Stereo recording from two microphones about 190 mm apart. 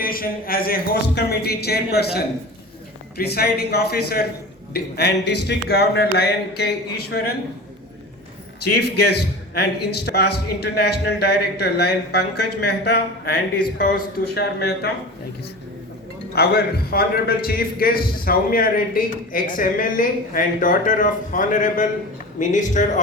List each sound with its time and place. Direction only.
0.0 s a man's voice: 50° left (ahead or behind)
8.8 s a man's voice: 60° left (ahead or behind)
16.3 s a man's voice: 55° left (ahead or behind); by 22.8 s 40° left (ahead or behind)